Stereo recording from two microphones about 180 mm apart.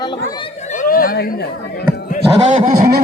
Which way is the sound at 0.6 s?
50° left (ahead or behind).